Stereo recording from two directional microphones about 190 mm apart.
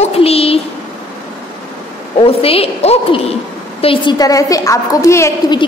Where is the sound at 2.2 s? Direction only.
30° left (ahead or behind).